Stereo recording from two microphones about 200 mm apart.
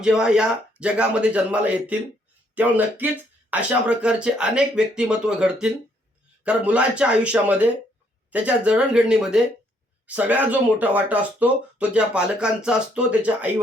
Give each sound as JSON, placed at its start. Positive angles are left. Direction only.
{"t": 0.0, "sound": "speech", "side_deg": -5}